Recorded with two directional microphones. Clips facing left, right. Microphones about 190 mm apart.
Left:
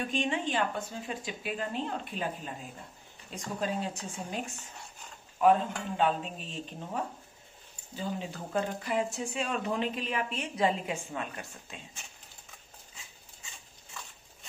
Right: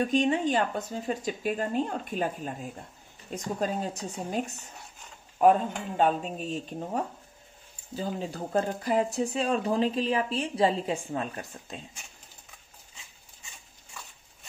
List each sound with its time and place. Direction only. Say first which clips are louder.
0.1 s speech: right 6 dB; 40° right (ahead or behind)
7.9 s speech: right 3 dB; 40° right (ahead or behind)